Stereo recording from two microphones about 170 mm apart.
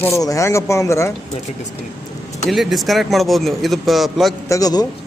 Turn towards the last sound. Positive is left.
turn(degrees=20)  # may be behind; listen again after turning